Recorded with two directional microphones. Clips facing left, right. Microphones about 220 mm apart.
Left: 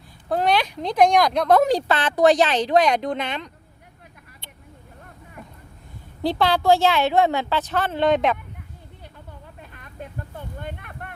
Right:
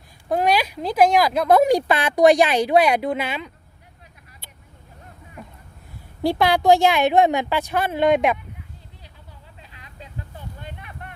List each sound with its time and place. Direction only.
0.3 s speech: 10° right (ahead or behind)
6.2 s speech: 15° right (ahead or behind)
9.1 s vehicle: 55° left (ahead or behind)